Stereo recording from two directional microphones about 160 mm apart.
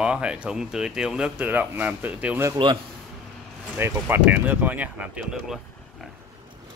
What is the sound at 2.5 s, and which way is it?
Speech, 30° right (ahead or behind).